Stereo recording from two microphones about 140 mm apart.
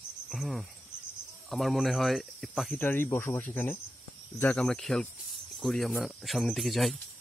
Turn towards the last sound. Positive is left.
turn(degrees=0)  # may be behind; listen again after turning